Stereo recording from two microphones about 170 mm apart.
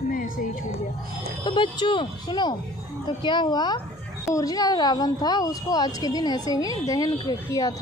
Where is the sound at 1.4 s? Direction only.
25° left (ahead or behind).